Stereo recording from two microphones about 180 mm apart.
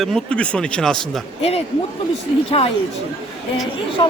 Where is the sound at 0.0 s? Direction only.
5° left (ahead or behind).